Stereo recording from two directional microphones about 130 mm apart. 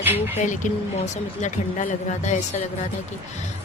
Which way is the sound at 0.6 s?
75° left (ahead or behind).